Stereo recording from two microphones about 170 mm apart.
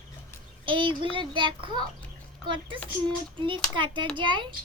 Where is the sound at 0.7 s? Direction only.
30° right (ahead or behind).